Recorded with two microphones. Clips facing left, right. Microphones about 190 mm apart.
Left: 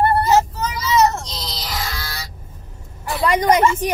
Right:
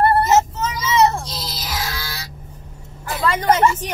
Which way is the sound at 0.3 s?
25° right (ahead or behind).